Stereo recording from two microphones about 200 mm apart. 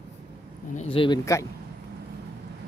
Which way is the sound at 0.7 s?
25° left (ahead or behind).